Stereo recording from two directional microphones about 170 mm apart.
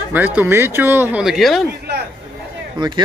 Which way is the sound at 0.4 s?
15° right (ahead or behind).